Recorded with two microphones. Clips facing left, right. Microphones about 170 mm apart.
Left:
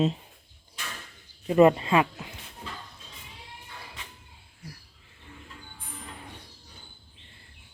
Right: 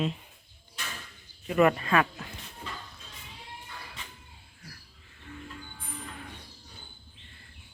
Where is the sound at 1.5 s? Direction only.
25° left (ahead or behind).